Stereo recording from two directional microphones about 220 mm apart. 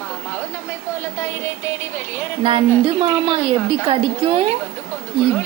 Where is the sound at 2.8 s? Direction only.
25° right (ahead or behind).